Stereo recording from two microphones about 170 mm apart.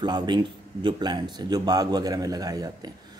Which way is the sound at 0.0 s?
25° right (ahead or behind).